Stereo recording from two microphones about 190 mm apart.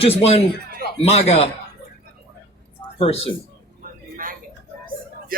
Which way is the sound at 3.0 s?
30° left (ahead or behind).